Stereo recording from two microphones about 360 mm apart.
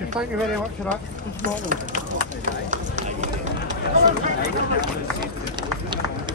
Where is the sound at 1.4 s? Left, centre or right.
Right.